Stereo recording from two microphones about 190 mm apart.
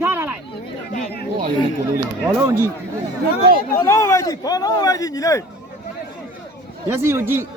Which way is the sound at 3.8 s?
15° left (ahead or behind).